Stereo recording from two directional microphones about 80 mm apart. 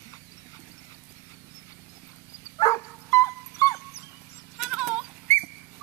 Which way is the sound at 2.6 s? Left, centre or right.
Left.